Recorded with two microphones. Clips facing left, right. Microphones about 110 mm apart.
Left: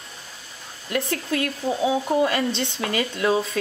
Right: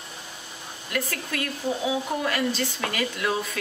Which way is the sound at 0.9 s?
25° left (ahead or behind).